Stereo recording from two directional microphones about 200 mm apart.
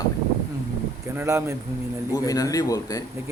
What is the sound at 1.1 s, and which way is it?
Speech, 10° right (ahead or behind).